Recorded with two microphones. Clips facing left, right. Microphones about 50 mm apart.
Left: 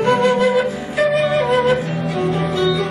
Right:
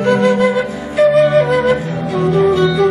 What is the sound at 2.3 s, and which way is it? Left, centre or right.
Music, right.